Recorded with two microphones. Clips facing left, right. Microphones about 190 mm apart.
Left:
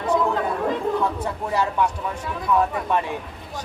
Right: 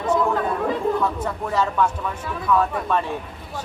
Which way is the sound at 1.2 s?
10° left (ahead or behind).